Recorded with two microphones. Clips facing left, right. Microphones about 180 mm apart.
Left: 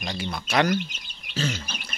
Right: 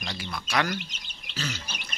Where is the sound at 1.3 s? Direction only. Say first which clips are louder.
Left 6 dB; 30° left (ahead or behind).